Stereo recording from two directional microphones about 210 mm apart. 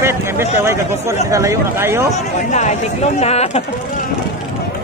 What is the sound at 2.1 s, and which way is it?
Speech, 35° left (ahead or behind).